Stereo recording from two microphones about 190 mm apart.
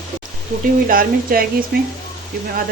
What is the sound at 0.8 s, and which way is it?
Speech, 50° right (ahead or behind).